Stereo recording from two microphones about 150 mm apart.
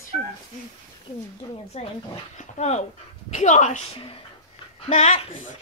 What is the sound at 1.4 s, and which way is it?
Speech, 30° left (ahead or behind).